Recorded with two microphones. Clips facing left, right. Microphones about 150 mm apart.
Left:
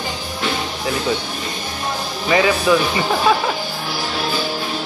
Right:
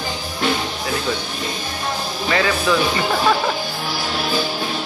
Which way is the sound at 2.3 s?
15° left (ahead or behind).